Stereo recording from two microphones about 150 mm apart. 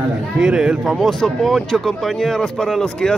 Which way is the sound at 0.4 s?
5° right (ahead or behind).